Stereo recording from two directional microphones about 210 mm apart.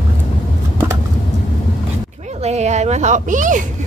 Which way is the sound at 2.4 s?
30° right (ahead or behind).